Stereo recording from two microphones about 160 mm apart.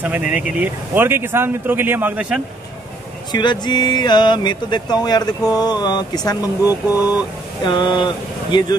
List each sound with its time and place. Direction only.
0.0 s speech: 10° right (ahead or behind)
3.3 s speech: 25° left (ahead or behind)
6.6 s speech: 15° right (ahead or behind)
7.6 s speech: 30° left (ahead or behind)